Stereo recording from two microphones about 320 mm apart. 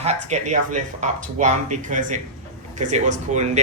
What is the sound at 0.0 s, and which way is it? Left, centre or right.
Speech, right.